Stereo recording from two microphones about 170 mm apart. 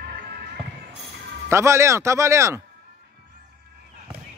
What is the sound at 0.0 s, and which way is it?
Basketball bounce, 75° right (ahead or behind).